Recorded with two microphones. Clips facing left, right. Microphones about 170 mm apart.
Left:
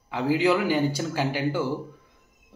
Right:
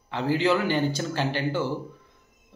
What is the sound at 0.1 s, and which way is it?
Speech, 10° left (ahead or behind).